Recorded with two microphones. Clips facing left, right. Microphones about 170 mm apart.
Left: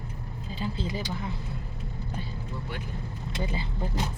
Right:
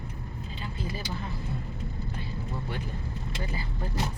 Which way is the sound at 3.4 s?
20° left (ahead or behind).